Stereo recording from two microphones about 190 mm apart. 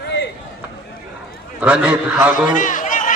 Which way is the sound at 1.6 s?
5° right (ahead or behind).